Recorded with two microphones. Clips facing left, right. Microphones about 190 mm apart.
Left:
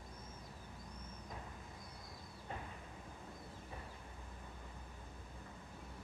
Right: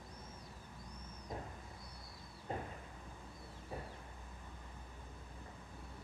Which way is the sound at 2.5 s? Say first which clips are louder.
Right 6 dB; 35° right (ahead or behind).